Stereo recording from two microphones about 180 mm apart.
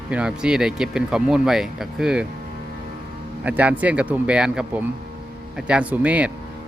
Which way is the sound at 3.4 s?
10° right (ahead or behind).